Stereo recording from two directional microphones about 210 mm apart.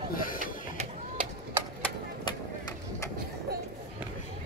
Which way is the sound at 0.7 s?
30° right (ahead or behind).